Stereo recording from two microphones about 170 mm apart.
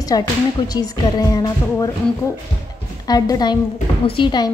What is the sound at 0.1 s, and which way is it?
A woman's voice, 20° left (ahead or behind).